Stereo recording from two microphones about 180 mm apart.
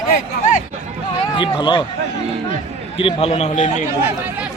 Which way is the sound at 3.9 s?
10° right (ahead or behind).